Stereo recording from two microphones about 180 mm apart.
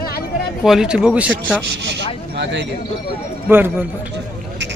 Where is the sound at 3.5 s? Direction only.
10° right (ahead or behind).